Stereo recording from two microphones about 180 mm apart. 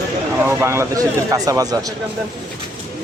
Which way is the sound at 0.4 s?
15° right (ahead or behind).